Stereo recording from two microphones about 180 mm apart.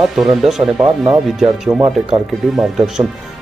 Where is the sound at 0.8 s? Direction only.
25° right (ahead or behind).